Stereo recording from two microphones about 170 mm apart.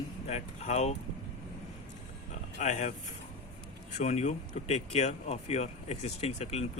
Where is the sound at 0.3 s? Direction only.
40° left (ahead or behind).